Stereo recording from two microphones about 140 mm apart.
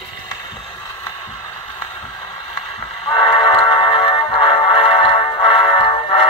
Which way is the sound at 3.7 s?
40° left (ahead or behind).